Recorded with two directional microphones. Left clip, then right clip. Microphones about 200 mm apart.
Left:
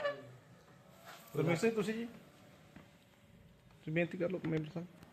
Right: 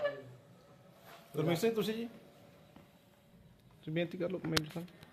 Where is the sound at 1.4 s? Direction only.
Centre (ahead or behind).